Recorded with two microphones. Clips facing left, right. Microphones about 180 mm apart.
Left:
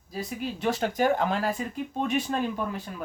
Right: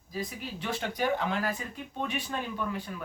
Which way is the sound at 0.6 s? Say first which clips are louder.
Left 6 dB; 40° left (ahead or behind).